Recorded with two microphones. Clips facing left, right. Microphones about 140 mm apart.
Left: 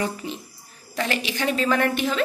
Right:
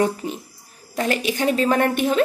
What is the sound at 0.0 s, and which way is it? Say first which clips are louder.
Speech: right 6 dB; 45° right (ahead or behind).